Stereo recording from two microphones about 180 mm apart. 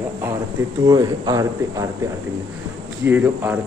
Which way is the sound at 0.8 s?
20° right (ahead or behind).